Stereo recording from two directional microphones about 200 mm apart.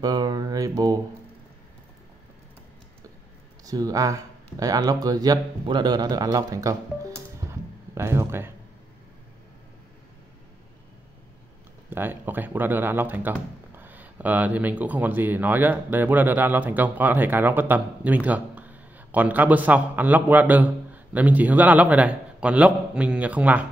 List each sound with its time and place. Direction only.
0.0 s speech: 20° right (ahead or behind)
3.6 s speech: 15° right (ahead or behind)
11.9 s speech: 10° right (ahead or behind)